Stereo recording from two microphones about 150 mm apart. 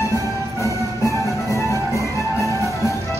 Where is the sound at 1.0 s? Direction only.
20° left (ahead or behind).